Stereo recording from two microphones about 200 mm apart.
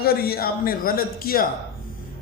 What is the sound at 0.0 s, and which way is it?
A man's voice, 50° left (ahead or behind).